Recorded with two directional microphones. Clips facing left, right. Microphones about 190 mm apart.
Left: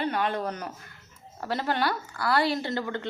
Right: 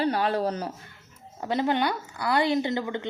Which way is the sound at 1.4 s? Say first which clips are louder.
Right 3 dB; 20° right (ahead or behind).